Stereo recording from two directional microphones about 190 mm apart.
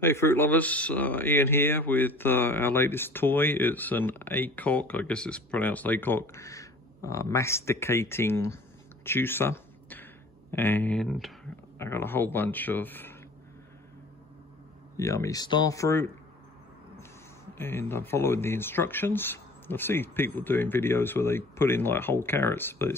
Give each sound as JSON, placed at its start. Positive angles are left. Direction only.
{"t": 0.0, "sound": "speech", "side_deg": 10}
{"t": 9.0, "sound": "a sound", "side_deg": 10}
{"t": 10.5, "sound": "speech", "side_deg": 10}
{"t": 11.8, "sound": "speech", "side_deg": 10}
{"t": 15.0, "sound": "speech", "side_deg": 15}
{"t": 17.6, "sound": "speech", "side_deg": 10}